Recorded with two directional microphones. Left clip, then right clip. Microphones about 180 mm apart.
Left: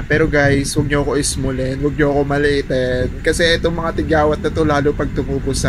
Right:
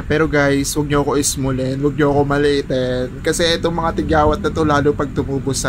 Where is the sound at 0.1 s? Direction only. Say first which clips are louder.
Left 1 dB; 15° right (ahead or behind).